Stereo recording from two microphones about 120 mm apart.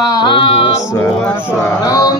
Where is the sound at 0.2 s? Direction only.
45° left (ahead or behind).